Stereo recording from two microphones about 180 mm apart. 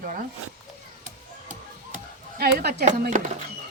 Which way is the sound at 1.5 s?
50° right (ahead or behind).